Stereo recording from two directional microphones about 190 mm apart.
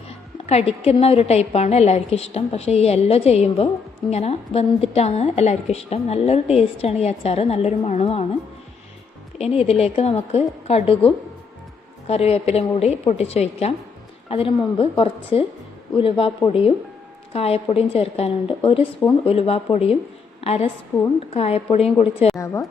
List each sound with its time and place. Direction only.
0.4 s a woman's voice: 30° left (ahead or behind)
9.4 s a woman's voice: 30° left (ahead or behind)
20.9 s a woman's voice: 15° left (ahead or behind)
21.2 s a woman's voice: 30° left (ahead or behind)